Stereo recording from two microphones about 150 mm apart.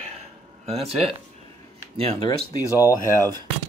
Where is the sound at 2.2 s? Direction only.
20° left (ahead or behind).